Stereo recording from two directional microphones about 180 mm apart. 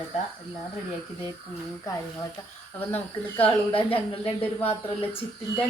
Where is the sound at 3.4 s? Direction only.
30° left (ahead or behind).